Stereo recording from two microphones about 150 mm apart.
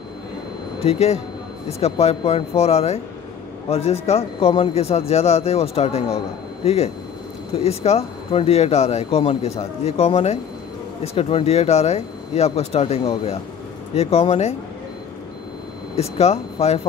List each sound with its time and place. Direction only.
0.8 s speech: 45° left (ahead or behind)
16.0 s speech: 45° left (ahead or behind)